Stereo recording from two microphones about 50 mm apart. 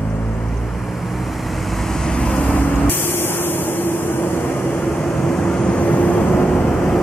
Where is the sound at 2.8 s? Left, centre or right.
Left.